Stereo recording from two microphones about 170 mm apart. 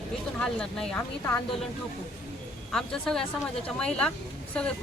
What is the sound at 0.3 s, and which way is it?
Speech, 5° left (ahead or behind).